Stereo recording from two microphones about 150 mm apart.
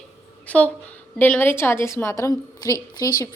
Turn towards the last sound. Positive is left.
turn(degrees=25)  # may be behind; listen again after turning